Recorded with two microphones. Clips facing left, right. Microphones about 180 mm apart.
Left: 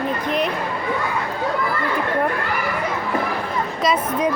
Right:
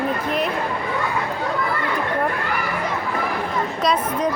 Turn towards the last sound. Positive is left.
turn(degrees=0)  # may be behind; listen again after turning